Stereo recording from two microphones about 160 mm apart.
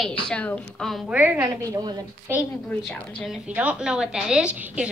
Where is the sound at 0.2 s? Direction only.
5° left (ahead or behind).